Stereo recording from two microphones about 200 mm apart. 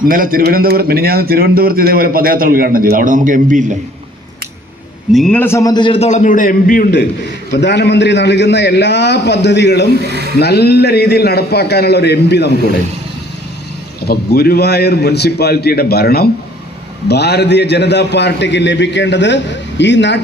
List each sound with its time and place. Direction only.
0.0 s a man's voice: 45° right (ahead or behind)
5.1 s a man's voice: 5° left (ahead or behind); by 7.0 s 45° left (ahead or behind)
7.5 s a man's voice: 55° left (ahead or behind)
14.0 s a man's voice: 50° left (ahead or behind)